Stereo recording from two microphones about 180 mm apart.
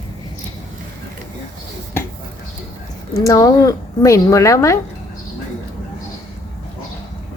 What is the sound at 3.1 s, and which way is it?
A woman's voice, 20° left (ahead or behind).